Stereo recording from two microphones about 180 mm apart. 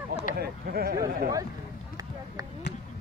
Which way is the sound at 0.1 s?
50° left (ahead or behind).